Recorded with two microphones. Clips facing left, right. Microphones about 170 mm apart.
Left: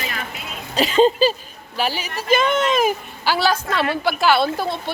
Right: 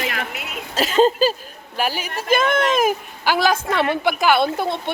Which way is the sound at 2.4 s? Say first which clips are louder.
Right 1 dB; 10° right (ahead or behind).